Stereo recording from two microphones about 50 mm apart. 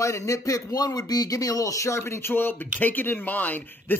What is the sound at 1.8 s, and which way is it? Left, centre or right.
Speech, left.